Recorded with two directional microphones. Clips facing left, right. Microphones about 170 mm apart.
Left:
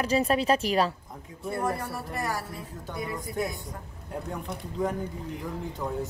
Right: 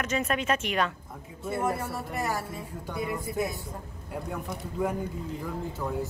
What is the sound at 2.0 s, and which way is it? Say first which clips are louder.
Speech: right 1 dB; 20° right (ahead or behind).